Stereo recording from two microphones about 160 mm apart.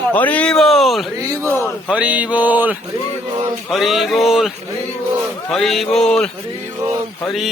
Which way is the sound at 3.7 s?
Centre (ahead or behind).